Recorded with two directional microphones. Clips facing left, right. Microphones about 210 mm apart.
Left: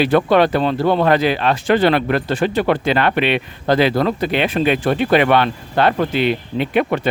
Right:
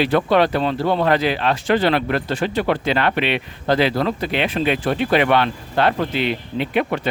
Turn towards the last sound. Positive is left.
turn(degrees=50)  # may be behind; listen again after turning